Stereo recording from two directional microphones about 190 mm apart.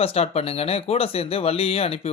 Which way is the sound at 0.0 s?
30° left (ahead or behind).